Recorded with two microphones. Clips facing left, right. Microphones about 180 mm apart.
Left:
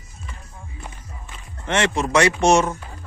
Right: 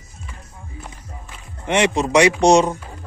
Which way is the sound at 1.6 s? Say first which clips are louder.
Right 3 dB; 15° right (ahead or behind).